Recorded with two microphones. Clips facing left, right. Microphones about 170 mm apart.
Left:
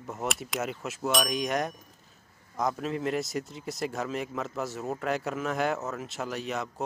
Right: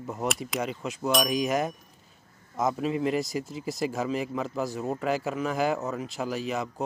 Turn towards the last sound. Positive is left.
turn(degrees=0)  # may be behind; listen again after turning